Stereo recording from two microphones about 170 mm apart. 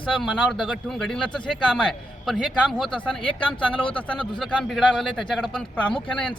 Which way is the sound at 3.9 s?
5° left (ahead or behind).